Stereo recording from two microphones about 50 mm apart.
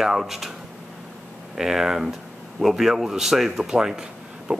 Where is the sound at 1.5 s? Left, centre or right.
Centre.